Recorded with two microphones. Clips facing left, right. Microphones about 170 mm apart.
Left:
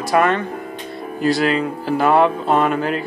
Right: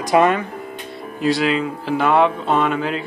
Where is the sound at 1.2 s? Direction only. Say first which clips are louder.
Left 1 dB; centre (ahead or behind).